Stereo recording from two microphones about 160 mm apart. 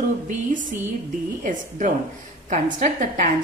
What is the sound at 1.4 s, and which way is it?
A woman's voice, 50° right (ahead or behind).